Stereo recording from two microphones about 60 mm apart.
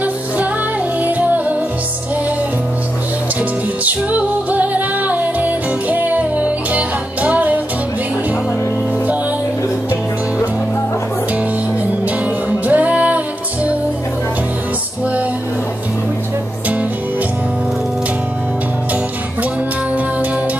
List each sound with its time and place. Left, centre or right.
1.0 s music: right
3.8 s music: right
12.4 s music: right